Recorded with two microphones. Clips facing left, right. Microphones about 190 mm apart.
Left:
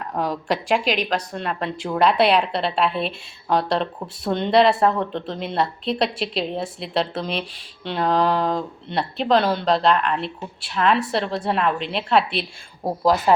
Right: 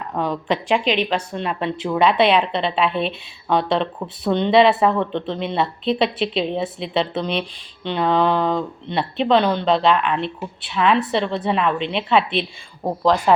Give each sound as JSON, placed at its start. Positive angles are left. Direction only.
{"t": 0.1, "sound": "speech", "side_deg": 0}